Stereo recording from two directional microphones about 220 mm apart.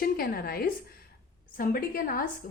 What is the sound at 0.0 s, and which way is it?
Speech, 40° left (ahead or behind).